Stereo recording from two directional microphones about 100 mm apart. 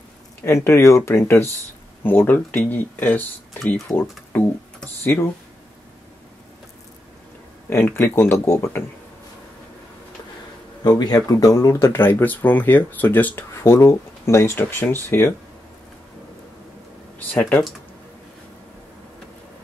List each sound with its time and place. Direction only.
0.4 s speech: 30° left (ahead or behind)
3.9 s speech: 35° left (ahead or behind)
4.3 s speech: 20° left (ahead or behind)
7.7 s speech: 25° left (ahead or behind)
10.8 s speech: 45° left (ahead or behind); by 15.3 s 20° left (ahead or behind)
17.3 s speech: 15° left (ahead or behind)